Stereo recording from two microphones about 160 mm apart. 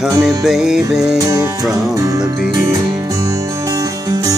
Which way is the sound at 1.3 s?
20° right (ahead or behind).